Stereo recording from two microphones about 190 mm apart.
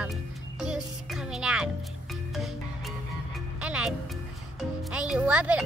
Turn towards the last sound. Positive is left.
turn(degrees=-5)  # may be behind; listen again after turning